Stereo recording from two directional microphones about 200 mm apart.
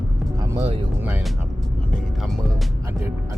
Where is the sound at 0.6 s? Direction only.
30° right (ahead or behind).